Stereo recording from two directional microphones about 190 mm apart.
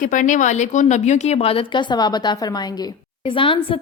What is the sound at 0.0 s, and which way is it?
A woman's voice, 40° left (ahead or behind).